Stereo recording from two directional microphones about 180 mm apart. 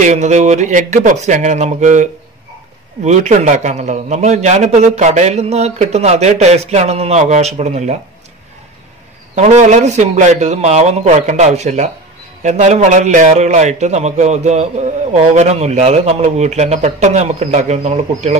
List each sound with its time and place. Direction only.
0.0 s a man's voice: 40° right (ahead or behind)
9.3 s a man's voice: 40° right (ahead or behind)